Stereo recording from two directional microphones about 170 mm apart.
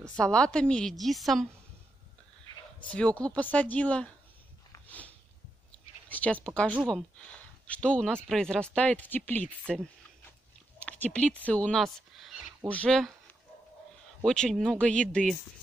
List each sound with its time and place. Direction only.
0.0 s a woman's voice: 5° left (ahead or behind)
2.8 s speech: 5° left (ahead or behind)
4.7 s a sound: 10° left (ahead or behind)
6.0 s speech: 10° left (ahead or behind)
10.8 s speech: 5° left (ahead or behind)
14.2 s a woman's voice: 5° left (ahead or behind)